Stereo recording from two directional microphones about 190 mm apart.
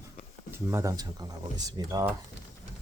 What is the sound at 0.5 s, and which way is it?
Speech, 15° right (ahead or behind).